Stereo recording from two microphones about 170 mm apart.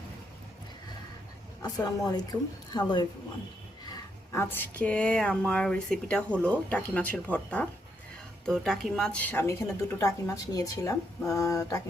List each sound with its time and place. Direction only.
1.6 s a woman's voice: 25° left (ahead or behind)
4.3 s speech: 15° left (ahead or behind)